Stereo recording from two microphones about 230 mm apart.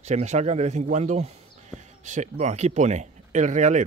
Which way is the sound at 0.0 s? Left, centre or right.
Right.